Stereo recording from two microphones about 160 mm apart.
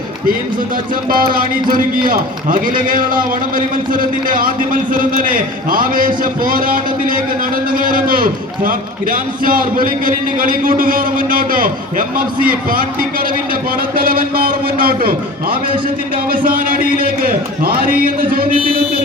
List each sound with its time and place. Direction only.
1.4 s a man's voice: 60° right (ahead or behind)